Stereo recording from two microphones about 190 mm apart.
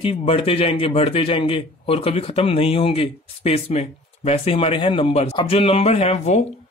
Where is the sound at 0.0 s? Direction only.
30° left (ahead or behind).